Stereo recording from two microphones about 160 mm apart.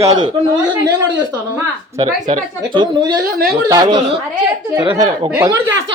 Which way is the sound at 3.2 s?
70° right (ahead or behind).